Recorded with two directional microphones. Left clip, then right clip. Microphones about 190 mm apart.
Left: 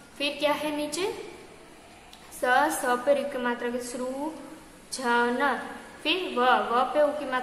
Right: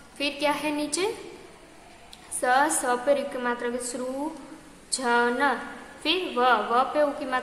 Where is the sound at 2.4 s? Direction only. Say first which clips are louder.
Right 1 dB; 10° right (ahead or behind).